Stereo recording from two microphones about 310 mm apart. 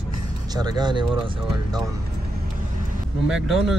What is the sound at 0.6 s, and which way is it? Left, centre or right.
Speech, centre.